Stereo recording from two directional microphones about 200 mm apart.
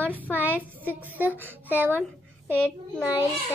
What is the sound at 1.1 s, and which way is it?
Speech, 10° right (ahead or behind).